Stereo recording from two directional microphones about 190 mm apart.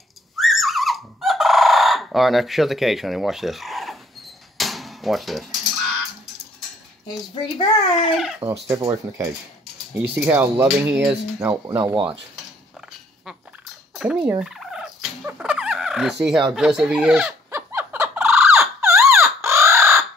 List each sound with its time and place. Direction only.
0.4 s a sound: centre (ahead or behind)
7.5 s a child's voice: 25° left (ahead or behind)
8.6 s speech: 15° right (ahead or behind)
13.9 s fowl: 5° right (ahead or behind)
14.4 s a sound: 5° right (ahead or behind)
16.5 s fowl: 5° right (ahead or behind)